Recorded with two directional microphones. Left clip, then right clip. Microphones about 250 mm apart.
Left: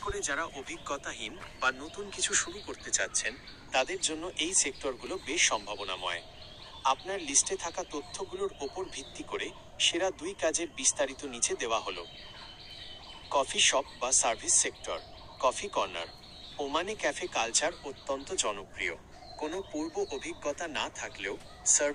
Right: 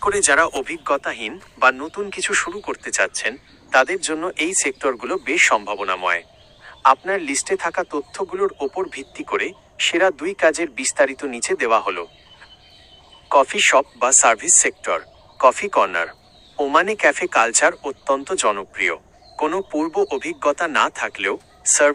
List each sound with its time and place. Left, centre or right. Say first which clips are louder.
0.0 s speech: right 18 dB; right
13.3 s speech: right 13 dB; right